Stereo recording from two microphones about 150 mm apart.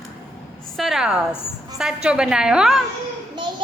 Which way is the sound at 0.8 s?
Centre (ahead or behind).